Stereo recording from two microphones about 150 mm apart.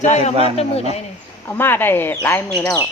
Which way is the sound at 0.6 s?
45° left (ahead or behind).